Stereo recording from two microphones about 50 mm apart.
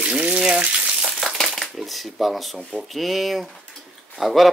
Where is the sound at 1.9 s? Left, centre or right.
Centre.